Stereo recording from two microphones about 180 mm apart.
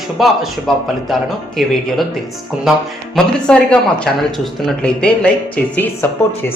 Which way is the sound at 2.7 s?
5° right (ahead or behind).